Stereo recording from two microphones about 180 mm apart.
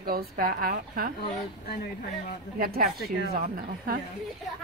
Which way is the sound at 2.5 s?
55° right (ahead or behind).